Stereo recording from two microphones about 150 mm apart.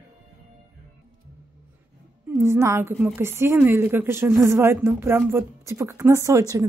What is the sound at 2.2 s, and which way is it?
A woman's voice, 15° right (ahead or behind).